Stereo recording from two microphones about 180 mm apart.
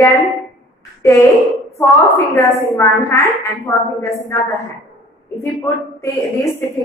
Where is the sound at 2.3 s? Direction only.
15° left (ahead or behind).